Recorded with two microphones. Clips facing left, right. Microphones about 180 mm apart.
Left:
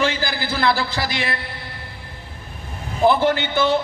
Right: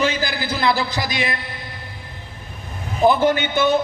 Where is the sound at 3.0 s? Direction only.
20° right (ahead or behind).